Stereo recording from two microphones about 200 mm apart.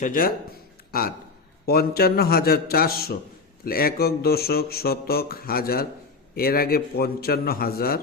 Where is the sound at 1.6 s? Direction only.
50° left (ahead or behind).